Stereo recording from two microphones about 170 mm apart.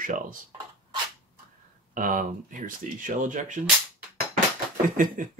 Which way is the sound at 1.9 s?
50° right (ahead or behind).